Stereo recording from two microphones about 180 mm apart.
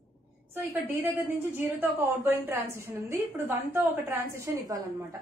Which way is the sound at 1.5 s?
10° right (ahead or behind).